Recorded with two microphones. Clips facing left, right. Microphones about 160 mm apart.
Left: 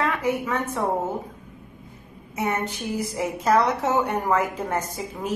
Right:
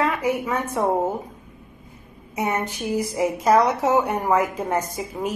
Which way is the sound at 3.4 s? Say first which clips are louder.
Right 2 dB; 10° right (ahead or behind).